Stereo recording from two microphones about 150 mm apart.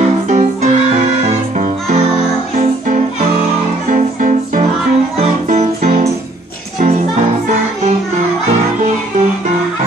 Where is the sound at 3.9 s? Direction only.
55° right (ahead or behind).